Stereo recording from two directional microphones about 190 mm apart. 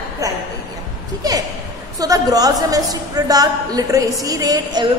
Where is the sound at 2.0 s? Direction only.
20° right (ahead or behind).